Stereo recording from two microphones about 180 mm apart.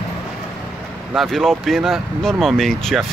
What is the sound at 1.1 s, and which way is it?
Speech, centre (ahead or behind).